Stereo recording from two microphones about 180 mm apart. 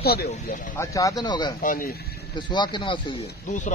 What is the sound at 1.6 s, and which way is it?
Speech, 50° left (ahead or behind).